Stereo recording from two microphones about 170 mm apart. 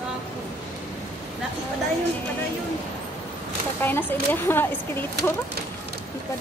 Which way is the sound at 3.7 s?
10° left (ahead or behind).